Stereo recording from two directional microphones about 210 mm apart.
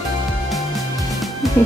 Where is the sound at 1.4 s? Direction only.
Centre (ahead or behind).